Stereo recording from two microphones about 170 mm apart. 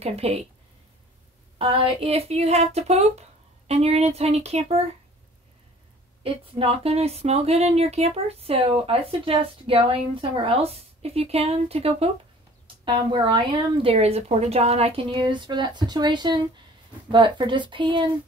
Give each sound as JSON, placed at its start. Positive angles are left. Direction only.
{"t": 0.0, "sound": "speech", "side_deg": -35}
{"t": 1.6, "sound": "speech", "side_deg": -35}
{"t": 6.2, "sound": "a woman's voice", "side_deg": -35}